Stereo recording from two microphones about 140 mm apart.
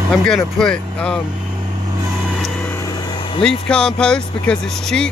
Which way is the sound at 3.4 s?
5° left (ahead or behind).